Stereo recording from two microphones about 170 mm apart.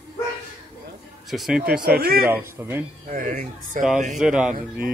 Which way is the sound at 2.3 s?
15° right (ahead or behind).